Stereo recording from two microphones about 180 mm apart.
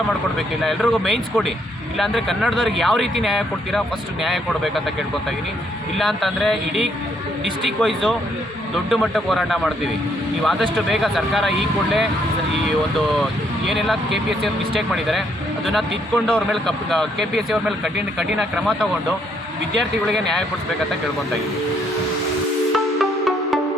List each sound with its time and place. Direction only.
0.3 s speech: centre (ahead or behind)
6.0 s speech: centre (ahead or behind)
13.7 s speech: centre (ahead or behind)
22.7 s music: centre (ahead or behind)